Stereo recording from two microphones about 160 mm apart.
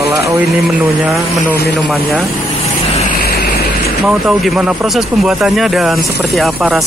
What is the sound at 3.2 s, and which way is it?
Vehicle, 70° left (ahead or behind).